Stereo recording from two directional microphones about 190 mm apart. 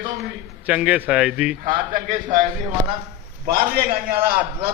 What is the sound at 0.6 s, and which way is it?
Speech, 5° right (ahead or behind).